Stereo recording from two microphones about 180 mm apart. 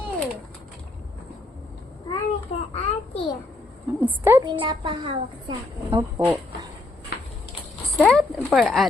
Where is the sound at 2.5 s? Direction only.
30° left (ahead or behind).